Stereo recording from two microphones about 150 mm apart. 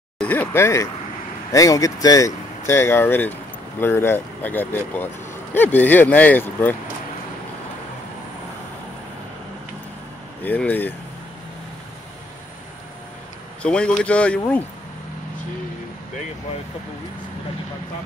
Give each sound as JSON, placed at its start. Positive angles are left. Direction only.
{"t": 0.2, "sound": "speech", "side_deg": 10}
{"t": 10.4, "sound": "speech", "side_deg": 10}
{"t": 13.6, "sound": "speech", "side_deg": 5}